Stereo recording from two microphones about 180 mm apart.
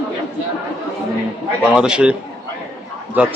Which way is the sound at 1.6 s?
5° right (ahead or behind).